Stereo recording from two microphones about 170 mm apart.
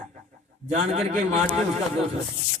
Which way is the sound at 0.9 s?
40° right (ahead or behind).